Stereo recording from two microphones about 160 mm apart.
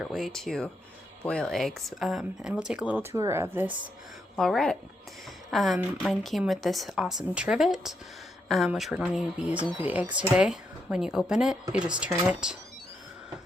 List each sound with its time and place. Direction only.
0.0 s speech: centre (ahead or behind)
4.4 s speech: 5° left (ahead or behind)